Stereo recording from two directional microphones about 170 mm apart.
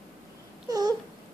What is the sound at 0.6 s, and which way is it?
Babbling, 20° right (ahead or behind).